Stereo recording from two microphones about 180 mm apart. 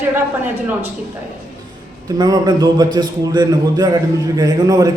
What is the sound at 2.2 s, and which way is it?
A man's voice, 20° right (ahead or behind).